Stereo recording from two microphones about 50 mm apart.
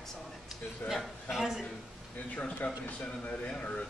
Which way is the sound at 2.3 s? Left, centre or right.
Left.